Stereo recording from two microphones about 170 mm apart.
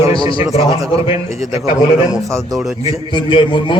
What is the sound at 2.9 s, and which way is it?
Speech, 30° left (ahead or behind).